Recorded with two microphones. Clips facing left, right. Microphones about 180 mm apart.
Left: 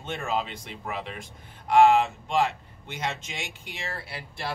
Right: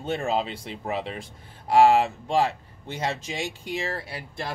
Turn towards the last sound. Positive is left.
turn(degrees=-40)  # may be behind; listen again after turning